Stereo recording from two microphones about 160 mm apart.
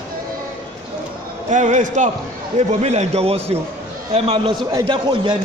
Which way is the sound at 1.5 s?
50° right (ahead or behind).